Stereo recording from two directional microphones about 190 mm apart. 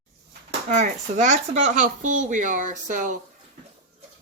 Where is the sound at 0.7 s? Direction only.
40° right (ahead or behind).